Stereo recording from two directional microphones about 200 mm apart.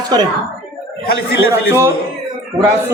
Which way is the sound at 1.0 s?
50° left (ahead or behind).